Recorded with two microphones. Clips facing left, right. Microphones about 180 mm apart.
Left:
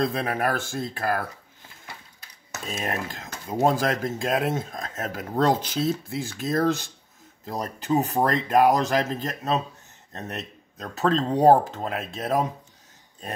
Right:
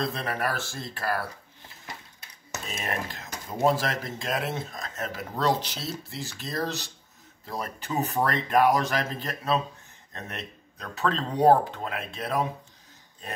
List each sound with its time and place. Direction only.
0.0 s speech: 50° left (ahead or behind)
2.8 s speech: 45° left (ahead or behind)
7.4 s speech: 40° left (ahead or behind)